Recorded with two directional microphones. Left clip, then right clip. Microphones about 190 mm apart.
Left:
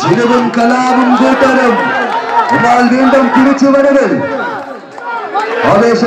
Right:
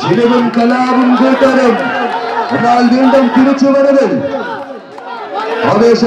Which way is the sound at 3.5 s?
35° left (ahead or behind).